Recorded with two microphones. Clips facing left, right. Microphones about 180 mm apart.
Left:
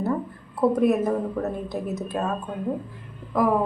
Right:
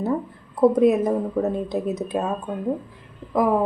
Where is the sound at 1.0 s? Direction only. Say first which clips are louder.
Right 3 dB; 15° right (ahead or behind).